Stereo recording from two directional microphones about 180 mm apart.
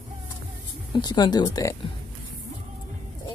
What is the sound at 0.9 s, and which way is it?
Speech, 25° left (ahead or behind).